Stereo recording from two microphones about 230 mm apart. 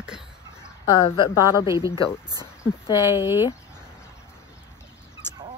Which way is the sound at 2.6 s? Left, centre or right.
Centre.